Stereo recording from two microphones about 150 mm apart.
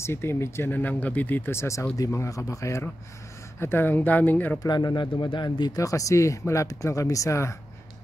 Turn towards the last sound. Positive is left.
turn(degrees=20)  # may be behind; listen again after turning